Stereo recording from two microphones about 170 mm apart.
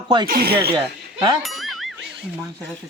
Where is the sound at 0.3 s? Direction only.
60° right (ahead or behind).